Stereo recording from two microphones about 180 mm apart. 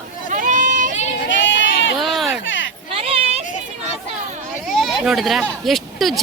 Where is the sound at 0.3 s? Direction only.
45° right (ahead or behind).